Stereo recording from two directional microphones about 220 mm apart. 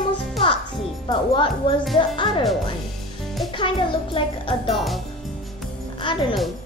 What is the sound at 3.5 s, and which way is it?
A child's voice, 20° left (ahead or behind).